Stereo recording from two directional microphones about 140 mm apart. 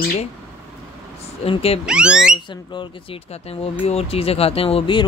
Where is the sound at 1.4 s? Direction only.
45° left (ahead or behind).